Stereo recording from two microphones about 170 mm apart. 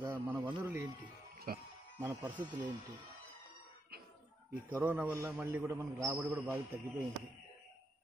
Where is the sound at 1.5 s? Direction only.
55° right (ahead or behind).